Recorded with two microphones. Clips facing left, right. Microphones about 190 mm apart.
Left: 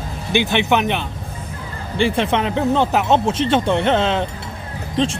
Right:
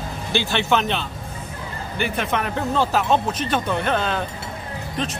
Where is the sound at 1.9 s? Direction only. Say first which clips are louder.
Left 6 dB; 30° left (ahead or behind).